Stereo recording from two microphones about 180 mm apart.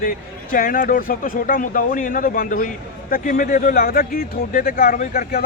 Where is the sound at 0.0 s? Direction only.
50° left (ahead or behind).